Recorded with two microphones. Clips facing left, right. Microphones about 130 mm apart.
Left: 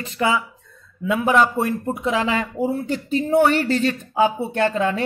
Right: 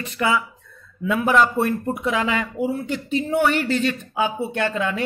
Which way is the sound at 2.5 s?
40° left (ahead or behind).